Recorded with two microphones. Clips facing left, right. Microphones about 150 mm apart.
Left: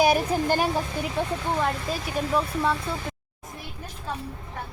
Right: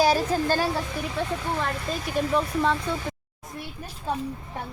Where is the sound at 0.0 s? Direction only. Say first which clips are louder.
Even; 15° left (ahead or behind).